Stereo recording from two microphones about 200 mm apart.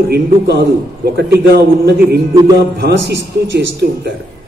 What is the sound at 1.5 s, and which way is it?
A man's voice, 55° right (ahead or behind).